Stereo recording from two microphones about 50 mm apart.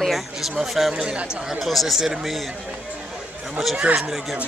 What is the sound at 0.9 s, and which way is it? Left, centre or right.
Speech, centre.